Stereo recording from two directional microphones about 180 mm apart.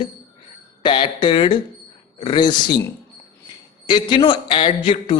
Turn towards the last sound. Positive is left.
turn(degrees=25)  # may be behind; listen again after turning